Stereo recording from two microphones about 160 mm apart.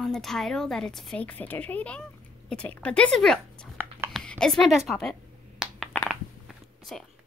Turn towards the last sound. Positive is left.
turn(degrees=5)  # may be behind; listen again after turning